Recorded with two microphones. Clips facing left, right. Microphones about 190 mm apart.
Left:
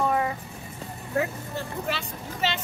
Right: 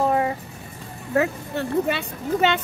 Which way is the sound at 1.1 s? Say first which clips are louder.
Right 6 dB; 80° right.